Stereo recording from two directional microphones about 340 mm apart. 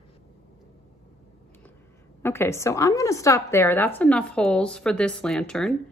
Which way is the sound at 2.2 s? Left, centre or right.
Centre.